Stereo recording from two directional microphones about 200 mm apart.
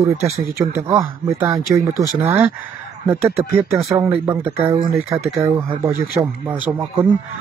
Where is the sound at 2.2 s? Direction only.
10° right (ahead or behind).